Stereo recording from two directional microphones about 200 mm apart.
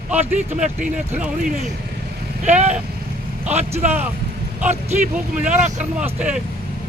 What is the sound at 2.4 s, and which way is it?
Speech, 35° right (ahead or behind).